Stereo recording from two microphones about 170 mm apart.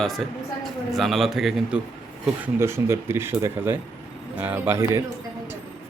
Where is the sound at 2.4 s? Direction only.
15° right (ahead or behind).